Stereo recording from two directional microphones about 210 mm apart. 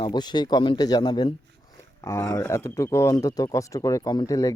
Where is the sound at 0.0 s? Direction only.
20° left (ahead or behind).